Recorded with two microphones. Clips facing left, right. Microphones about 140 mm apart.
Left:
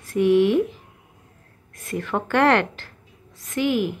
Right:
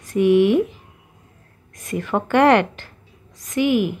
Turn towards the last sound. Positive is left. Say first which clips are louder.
# right 3 dB
turn(degrees=-15)  # may be behind; listen again after turning